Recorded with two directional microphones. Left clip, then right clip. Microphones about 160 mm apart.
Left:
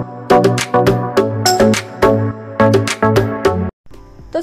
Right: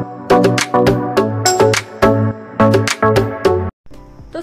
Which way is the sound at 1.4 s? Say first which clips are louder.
Right 1 dB; 5° left (ahead or behind).